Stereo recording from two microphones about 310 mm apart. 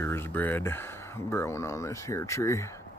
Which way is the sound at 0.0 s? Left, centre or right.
Centre.